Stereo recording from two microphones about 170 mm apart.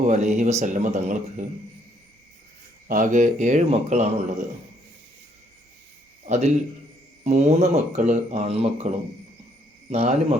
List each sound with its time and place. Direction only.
0.0 s speech: 40° right (ahead or behind)
2.8 s speech: 50° right (ahead or behind)
6.2 s a man's voice: 40° right (ahead or behind)
9.9 s speech: 35° right (ahead or behind)